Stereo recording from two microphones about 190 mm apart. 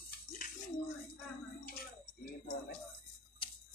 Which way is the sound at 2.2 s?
55° left (ahead or behind).